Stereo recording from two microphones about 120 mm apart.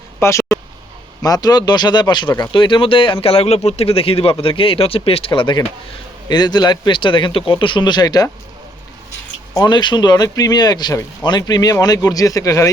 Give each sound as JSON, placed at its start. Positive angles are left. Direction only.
{"t": 0.2, "sound": "speech", "side_deg": 25}
{"t": 9.6, "sound": "speech", "side_deg": 40}